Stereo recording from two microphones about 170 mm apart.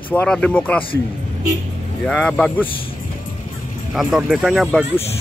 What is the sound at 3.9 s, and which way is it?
Speech, centre (ahead or behind).